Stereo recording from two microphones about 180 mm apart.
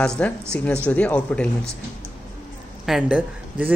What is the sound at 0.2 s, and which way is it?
Speech, 5° left (ahead or behind).